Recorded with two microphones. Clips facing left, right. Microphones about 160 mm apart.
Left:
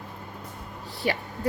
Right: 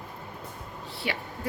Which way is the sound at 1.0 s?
40° left (ahead or behind).